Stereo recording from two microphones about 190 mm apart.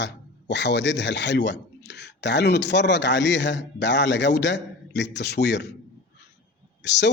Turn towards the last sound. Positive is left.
turn(degrees=65)  # may be behind; listen again after turning